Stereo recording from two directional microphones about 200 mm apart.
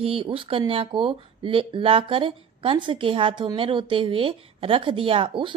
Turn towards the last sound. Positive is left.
turn(degrees=-25)  # may be behind; listen again after turning